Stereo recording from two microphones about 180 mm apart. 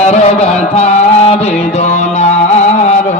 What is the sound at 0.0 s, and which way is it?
Music, 40° left (ahead or behind).